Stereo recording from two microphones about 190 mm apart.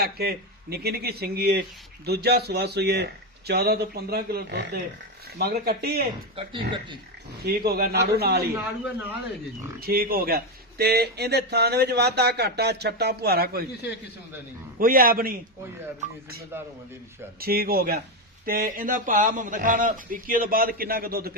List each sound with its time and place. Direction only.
0.0 s speech: 55° right (ahead or behind)
6.3 s speech: 25° right (ahead or behind)
7.4 s speech: 55° right (ahead or behind)
9.8 s speech: 50° right (ahead or behind)
14.8 s a man's voice: 50° right (ahead or behind)
17.4 s a man's voice: 55° right (ahead or behind)